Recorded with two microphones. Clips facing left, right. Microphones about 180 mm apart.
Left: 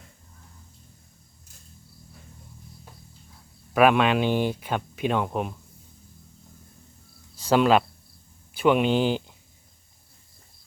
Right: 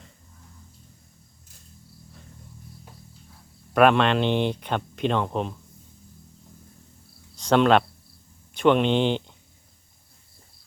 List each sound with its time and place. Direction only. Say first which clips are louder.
3.8 s speech: right 1 dB; 5° left (ahead or behind)
7.3 s speech: right 1 dB; 5° left (ahead or behind)